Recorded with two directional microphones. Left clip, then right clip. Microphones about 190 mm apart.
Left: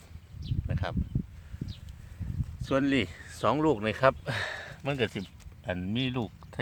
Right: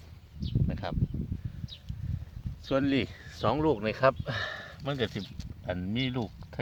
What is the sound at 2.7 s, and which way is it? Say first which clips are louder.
Speech: left 1 dB; 10° left (ahead or behind).